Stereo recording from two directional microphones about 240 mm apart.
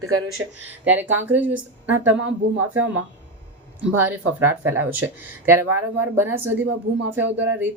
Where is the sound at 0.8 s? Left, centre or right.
Centre.